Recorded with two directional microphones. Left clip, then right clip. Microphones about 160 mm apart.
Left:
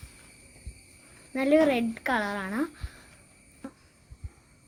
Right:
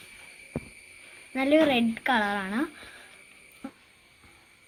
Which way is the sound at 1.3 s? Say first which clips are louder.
Even; 30° left (ahead or behind).